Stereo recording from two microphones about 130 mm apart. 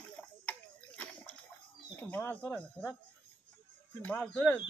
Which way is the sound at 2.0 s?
15° left (ahead or behind).